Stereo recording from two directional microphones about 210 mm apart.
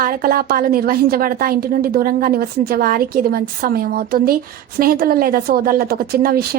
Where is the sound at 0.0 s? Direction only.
45° right (ahead or behind).